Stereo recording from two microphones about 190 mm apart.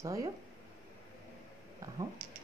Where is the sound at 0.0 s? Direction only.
15° right (ahead or behind).